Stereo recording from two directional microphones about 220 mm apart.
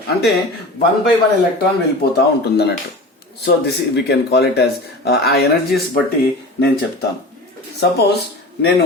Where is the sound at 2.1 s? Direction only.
50° left (ahead or behind).